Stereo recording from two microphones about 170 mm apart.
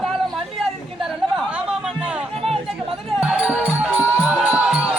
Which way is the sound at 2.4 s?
35° right (ahead or behind).